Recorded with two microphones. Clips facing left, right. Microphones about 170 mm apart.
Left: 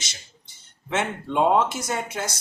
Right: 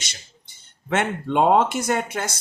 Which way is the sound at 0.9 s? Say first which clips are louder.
Right 3 dB; 60° right (ahead or behind).